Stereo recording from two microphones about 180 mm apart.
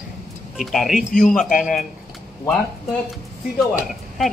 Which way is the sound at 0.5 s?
Centre (ahead or behind).